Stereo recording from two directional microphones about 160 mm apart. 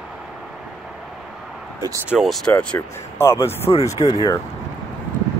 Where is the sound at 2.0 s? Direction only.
Centre (ahead or behind); by 4.3 s 25° left (ahead or behind).